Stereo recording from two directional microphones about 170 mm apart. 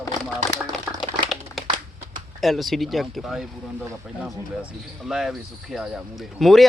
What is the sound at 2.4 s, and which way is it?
Speech, centre (ahead or behind).